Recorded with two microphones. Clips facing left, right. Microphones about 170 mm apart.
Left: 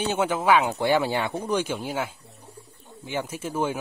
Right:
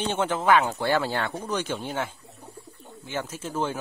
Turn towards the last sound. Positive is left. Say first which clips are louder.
# left 2 dB
turn(degrees=10)  # may be behind; listen again after turning